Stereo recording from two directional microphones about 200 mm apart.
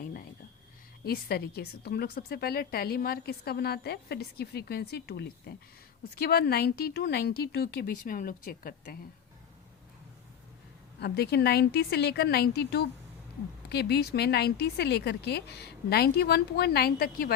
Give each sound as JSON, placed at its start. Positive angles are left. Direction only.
{"t": 1.0, "sound": "a woman's voice", "side_deg": 50}
{"t": 11.0, "sound": "a woman's voice", "side_deg": 55}